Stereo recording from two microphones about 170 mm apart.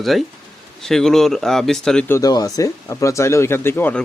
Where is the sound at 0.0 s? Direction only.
Centre (ahead or behind).